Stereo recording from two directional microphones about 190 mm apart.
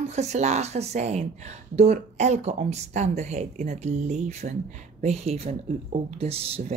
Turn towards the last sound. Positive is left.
turn(degrees=-30)  # may be behind; listen again after turning